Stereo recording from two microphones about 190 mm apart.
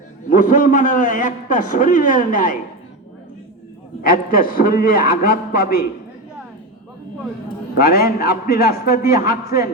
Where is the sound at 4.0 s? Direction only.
50° left (ahead or behind).